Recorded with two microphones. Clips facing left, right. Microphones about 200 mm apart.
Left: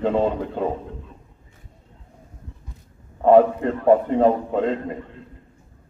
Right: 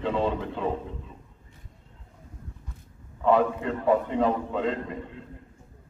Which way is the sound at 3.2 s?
50° left (ahead or behind).